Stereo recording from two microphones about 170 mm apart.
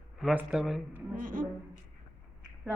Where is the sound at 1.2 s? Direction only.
55° right (ahead or behind).